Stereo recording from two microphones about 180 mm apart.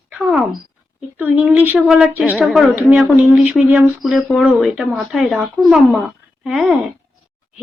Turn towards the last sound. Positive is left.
turn(degrees=0)  # may be behind; listen again after turning